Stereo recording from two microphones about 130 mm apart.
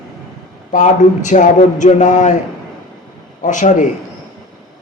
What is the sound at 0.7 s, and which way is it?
Speech, 70° left (ahead or behind).